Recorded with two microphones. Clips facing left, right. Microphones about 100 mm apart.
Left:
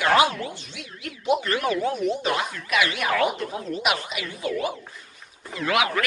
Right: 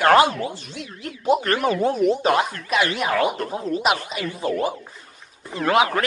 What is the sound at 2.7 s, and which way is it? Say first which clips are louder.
Speech: left 1 dB; 30° right (ahead or behind).